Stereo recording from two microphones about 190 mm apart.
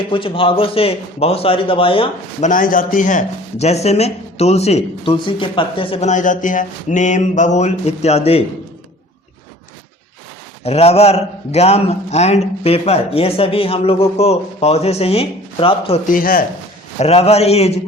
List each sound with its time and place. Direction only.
0.1 s a man's voice: 30° left (ahead or behind)
2.5 s speech: 45° left (ahead or behind)
10.6 s speech: 35° left (ahead or behind)
16.0 s speech: 50° left (ahead or behind)
17.0 s speech: 35° left (ahead or behind)